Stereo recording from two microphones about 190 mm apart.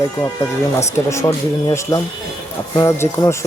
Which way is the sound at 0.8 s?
15° left (ahead or behind).